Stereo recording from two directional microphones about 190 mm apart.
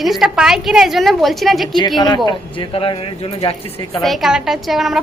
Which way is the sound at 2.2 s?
25° left (ahead or behind).